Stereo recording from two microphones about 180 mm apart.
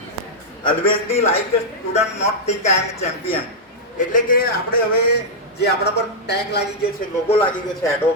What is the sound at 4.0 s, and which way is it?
A man's voice, 45° left (ahead or behind).